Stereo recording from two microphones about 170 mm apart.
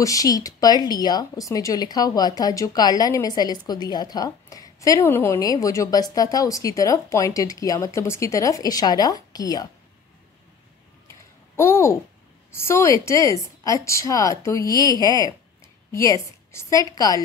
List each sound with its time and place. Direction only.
0.0 s speech: 20° left (ahead or behind)
11.5 s a child's voice: 15° left (ahead or behind)